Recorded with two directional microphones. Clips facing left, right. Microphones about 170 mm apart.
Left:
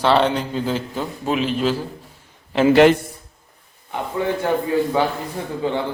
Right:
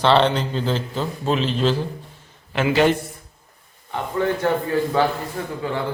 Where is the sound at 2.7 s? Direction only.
80° left.